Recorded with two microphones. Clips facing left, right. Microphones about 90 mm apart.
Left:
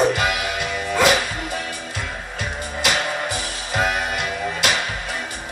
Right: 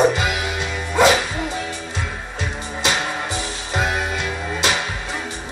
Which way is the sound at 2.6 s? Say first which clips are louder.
Even; 25° right (ahead or behind).